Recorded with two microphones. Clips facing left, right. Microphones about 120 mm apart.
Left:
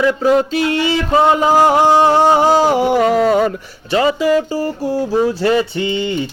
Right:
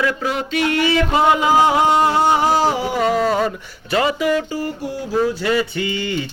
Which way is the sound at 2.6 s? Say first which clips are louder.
Left 5 dB; 55° left (ahead or behind).